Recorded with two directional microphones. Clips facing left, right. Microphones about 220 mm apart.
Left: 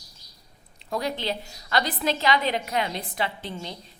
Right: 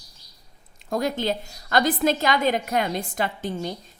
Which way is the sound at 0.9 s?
45° right (ahead or behind).